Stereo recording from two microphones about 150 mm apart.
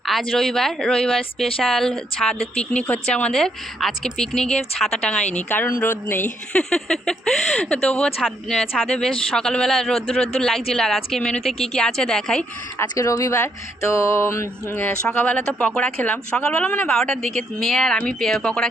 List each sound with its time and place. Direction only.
0.0 s speech: centre (ahead or behind)
13.0 s a sound: 20° left (ahead or behind)
15.0 s speech: 10° left (ahead or behind)